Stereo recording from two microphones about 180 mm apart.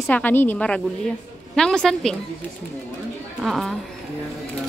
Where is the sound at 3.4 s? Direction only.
Centre (ahead or behind).